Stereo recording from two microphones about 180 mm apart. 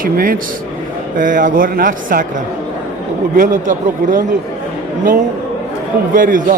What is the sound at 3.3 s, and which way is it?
Speech, 45° right (ahead or behind).